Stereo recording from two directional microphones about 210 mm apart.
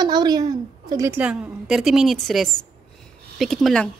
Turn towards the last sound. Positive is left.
turn(degrees=0)  # may be behind; listen again after turning